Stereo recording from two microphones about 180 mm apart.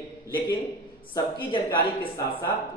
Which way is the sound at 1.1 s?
25° left (ahead or behind).